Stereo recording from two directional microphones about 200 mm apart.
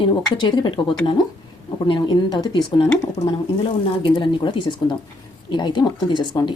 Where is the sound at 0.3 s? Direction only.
25° left (ahead or behind).